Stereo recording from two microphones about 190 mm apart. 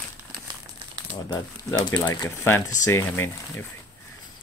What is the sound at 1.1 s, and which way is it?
Speech, 20° left (ahead or behind).